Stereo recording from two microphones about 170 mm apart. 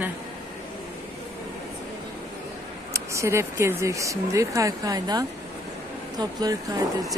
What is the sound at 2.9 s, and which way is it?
Speech, 15° right (ahead or behind).